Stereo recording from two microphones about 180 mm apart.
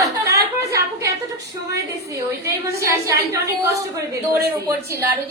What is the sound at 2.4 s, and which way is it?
A woman's voice, 15° right (ahead or behind).